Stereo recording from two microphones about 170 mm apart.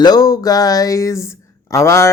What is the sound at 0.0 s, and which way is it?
Speech, 25° left (ahead or behind).